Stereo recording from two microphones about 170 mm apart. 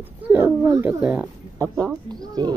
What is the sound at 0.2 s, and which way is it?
A child's voice, 10° right (ahead or behind).